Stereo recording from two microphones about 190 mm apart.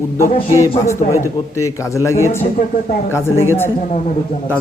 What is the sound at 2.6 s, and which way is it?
Speech, 50° left (ahead or behind).